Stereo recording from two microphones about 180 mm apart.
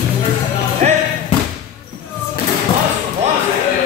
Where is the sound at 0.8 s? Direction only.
40° right (ahead or behind).